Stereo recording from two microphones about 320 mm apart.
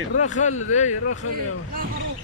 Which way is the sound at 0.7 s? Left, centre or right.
Left.